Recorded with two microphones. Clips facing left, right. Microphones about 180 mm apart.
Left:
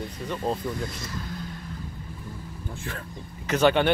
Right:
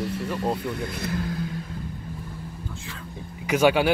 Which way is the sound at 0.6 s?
65° right (ahead or behind).